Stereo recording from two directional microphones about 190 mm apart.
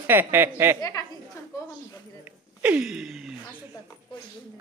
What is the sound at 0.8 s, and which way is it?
Speech, 20° left (ahead or behind).